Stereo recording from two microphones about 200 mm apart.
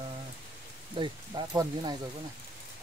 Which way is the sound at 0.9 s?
25° right (ahead or behind).